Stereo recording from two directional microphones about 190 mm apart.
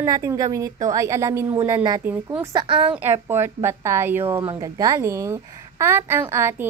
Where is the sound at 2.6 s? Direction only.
25° right (ahead or behind).